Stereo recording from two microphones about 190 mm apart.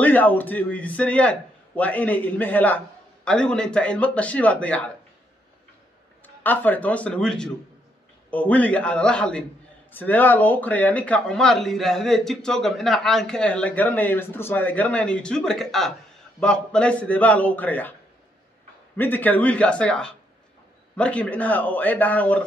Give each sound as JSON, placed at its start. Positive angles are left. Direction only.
{"t": 0.0, "sound": "speech", "side_deg": 10}
{"t": 6.2, "sound": "speech", "side_deg": 10}
{"t": 18.9, "sound": "speech", "side_deg": 10}